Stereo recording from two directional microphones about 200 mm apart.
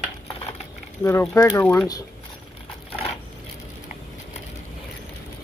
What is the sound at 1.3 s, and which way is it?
Speech, 15° left (ahead or behind).